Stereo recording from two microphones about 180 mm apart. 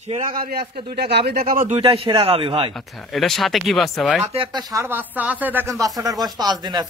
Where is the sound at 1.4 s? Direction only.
45° right (ahead or behind).